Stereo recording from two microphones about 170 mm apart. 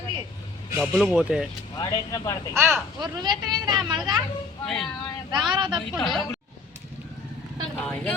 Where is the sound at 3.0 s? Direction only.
25° right (ahead or behind).